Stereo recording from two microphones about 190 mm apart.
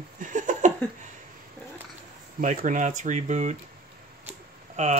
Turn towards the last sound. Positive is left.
turn(degrees=-35)  # may be behind; listen again after turning